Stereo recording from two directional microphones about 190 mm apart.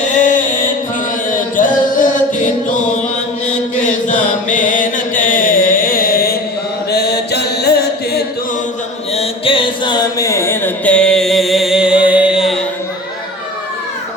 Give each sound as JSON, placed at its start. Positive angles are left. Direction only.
{"t": 0.0, "sound": "mantra", "side_deg": 40}
{"t": 1.3, "sound": "chant", "side_deg": 45}
{"t": 6.9, "sound": "mantra", "side_deg": 60}
{"t": 9.1, "sound": "mantra", "side_deg": 30}